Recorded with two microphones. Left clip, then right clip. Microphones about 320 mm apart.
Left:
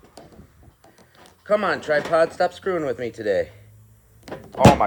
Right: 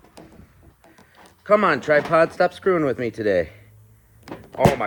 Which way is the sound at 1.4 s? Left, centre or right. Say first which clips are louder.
Right 4 dB; centre.